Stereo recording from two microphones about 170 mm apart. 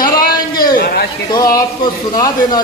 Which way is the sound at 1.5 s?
20° left (ahead or behind).